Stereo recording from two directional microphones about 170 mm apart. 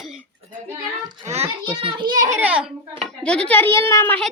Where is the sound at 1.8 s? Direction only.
25° right (ahead or behind).